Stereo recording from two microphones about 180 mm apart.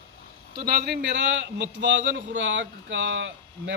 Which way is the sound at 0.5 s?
55° right (ahead or behind).